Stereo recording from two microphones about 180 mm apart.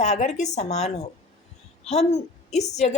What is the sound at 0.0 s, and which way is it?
A woman's voice, 40° left (ahead or behind).